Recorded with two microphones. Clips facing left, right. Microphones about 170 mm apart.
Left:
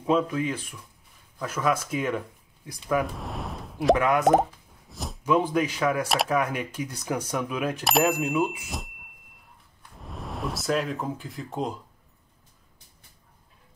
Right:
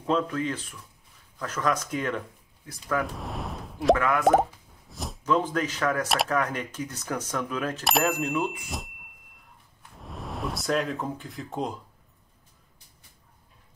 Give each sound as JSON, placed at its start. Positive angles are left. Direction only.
{"t": 0.0, "sound": "speech", "side_deg": 10}
{"t": 3.0, "sound": "a sound", "side_deg": 0}
{"t": 3.9, "sound": "speech", "side_deg": 20}
{"t": 4.2, "sound": "plop", "side_deg": 0}
{"t": 5.2, "sound": "speech", "side_deg": 10}
{"t": 6.0, "sound": "speech", "side_deg": 0}
{"t": 6.3, "sound": "speech", "side_deg": 10}
{"t": 9.9, "sound": "speech", "side_deg": 0}